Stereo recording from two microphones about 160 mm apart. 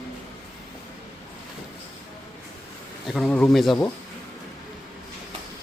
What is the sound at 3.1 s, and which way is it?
Speech, 5° left (ahead or behind).